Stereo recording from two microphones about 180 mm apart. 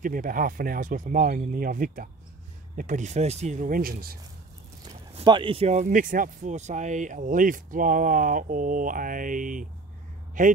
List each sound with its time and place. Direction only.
0.0 s speech: 50° right (ahead or behind)
5.1 s speech: 25° right (ahead or behind); by 10.5 s 45° right (ahead or behind)